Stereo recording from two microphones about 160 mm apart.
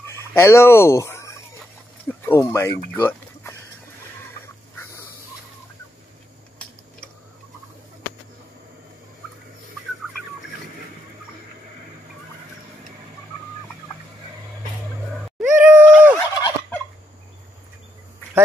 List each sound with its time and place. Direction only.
0.3 s speech: 15° left (ahead or behind)
15.1 s a sound: 10° right (ahead or behind)
16.2 s fowl: 25° left (ahead or behind)